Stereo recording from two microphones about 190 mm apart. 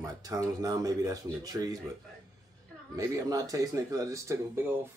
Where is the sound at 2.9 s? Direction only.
20° right (ahead or behind).